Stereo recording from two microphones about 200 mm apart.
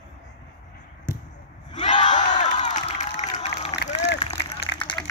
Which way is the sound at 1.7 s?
35° left (ahead or behind).